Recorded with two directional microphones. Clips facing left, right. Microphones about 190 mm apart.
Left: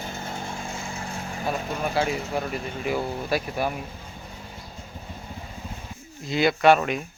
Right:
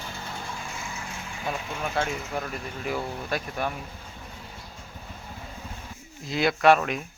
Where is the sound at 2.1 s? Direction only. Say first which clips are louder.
Left 4 dB; 30° left (ahead or behind).